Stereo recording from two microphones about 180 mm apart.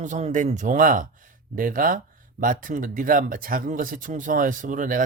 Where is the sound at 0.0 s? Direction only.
45° right (ahead or behind).